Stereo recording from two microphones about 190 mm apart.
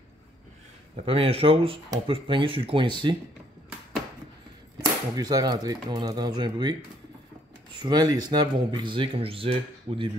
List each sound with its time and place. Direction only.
1.0 s speech: 30° right (ahead or behind)
5.1 s speech: 20° right (ahead or behind)